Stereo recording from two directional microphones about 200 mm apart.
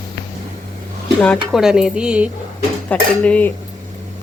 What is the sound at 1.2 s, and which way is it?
A woman's voice, centre (ahead or behind).